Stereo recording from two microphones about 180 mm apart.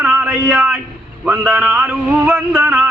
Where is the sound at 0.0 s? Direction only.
5° right (ahead or behind).